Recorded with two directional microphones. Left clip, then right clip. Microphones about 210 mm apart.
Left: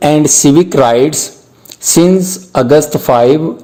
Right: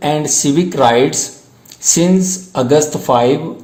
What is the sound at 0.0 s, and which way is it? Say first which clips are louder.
Speech: left 7 dB; 35° left (ahead or behind).